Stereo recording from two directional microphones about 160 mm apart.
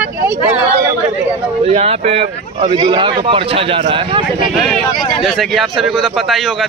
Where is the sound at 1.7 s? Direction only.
40° right (ahead or behind).